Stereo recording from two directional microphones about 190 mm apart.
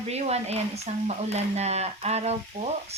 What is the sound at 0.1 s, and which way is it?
Frying, 35° right (ahead or behind).